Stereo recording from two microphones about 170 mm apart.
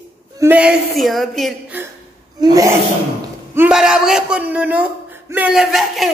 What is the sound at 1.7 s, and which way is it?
Speech, 10° right (ahead or behind).